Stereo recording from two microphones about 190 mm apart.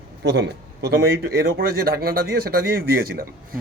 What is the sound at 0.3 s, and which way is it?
A man's voice, 60° right (ahead or behind).